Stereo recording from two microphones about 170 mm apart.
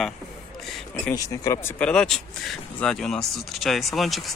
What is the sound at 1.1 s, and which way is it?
Speech, 20° left (ahead or behind).